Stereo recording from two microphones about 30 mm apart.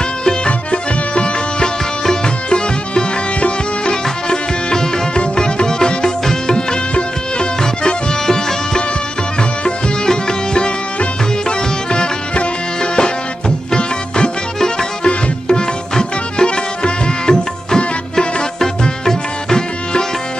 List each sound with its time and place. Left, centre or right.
0.5 s music: left
3.3 s sitar: left
4.3 s music: left
7.6 s music: centre
10.0 s music: left
11.9 s music: left
13.7 s music: left
18.1 s music: centre